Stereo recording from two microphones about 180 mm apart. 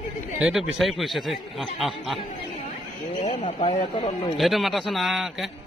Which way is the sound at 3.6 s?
25° left (ahead or behind).